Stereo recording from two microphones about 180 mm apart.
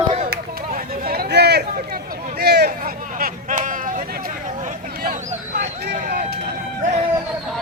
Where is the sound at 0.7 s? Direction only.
55° right (ahead or behind).